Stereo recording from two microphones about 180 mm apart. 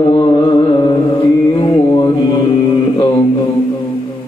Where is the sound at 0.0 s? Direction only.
30° left (ahead or behind).